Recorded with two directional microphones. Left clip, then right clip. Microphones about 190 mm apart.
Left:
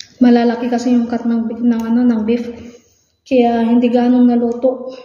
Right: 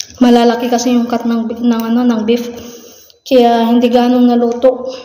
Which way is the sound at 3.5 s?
10° left (ahead or behind).